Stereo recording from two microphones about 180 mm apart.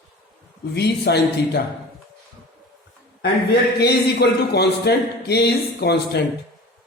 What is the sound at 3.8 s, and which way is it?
Speech, 65° left (ahead or behind).